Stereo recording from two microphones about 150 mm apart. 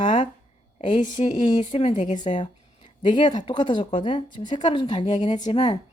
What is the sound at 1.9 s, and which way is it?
Speech, 55° left (ahead or behind).